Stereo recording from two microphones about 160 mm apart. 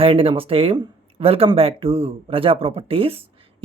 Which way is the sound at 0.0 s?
35° right (ahead or behind).